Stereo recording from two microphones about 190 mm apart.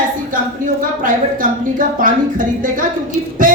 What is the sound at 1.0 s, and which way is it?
A woman's voice, 45° right (ahead or behind).